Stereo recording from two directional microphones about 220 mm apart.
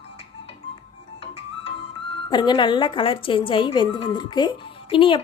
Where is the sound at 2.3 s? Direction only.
20° left (ahead or behind).